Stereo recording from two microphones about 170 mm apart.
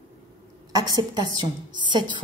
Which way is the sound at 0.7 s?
20° right (ahead or behind).